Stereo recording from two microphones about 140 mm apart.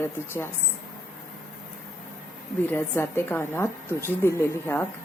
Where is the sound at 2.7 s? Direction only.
15° left (ahead or behind).